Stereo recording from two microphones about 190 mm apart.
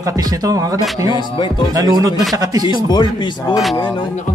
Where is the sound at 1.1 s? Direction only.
25° left (ahead or behind).